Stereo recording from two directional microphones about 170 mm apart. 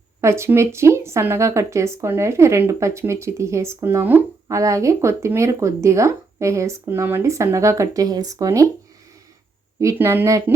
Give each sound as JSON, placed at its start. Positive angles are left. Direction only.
{"t": 0.2, "sound": "speech", "side_deg": -15}
{"t": 9.8, "sound": "speech", "side_deg": -15}